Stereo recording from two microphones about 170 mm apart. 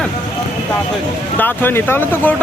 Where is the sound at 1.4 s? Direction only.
10° left (ahead or behind).